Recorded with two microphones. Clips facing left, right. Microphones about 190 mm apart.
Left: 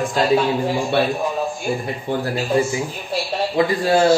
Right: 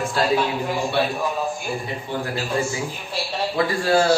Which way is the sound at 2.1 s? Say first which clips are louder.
Left 5 dB; 50° left (ahead or behind).